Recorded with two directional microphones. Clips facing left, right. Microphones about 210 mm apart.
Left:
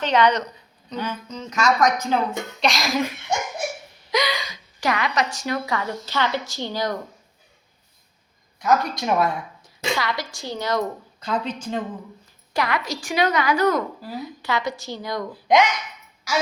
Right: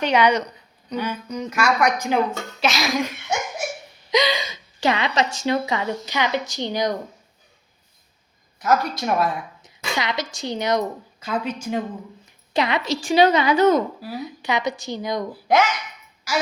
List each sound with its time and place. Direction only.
0.0 s a woman's voice: 10° right (ahead or behind)
4.1 s a woman's voice: 25° right (ahead or behind)
8.5 s speech: 5° right (ahead or behind)
10.0 s a woman's voice: 20° right (ahead or behind)
11.2 s a woman's voice: 10° right (ahead or behind)
12.5 s a woman's voice: 20° right (ahead or behind)
15.3 s a woman's voice: 5° right (ahead or behind)